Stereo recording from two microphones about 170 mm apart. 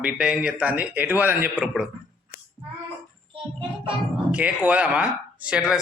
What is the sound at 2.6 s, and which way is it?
Child singing, 10° right (ahead or behind).